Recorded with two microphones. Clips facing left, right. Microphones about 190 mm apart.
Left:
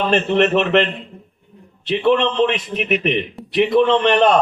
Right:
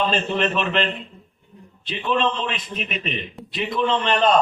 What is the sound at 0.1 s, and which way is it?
A man's voice, 70° left (ahead or behind).